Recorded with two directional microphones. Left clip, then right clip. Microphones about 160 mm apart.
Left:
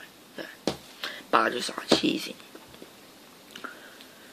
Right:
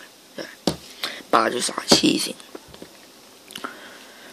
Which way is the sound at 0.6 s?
25° right (ahead or behind).